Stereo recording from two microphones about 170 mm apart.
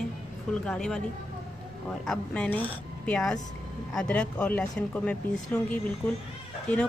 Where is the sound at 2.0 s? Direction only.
5° left (ahead or behind).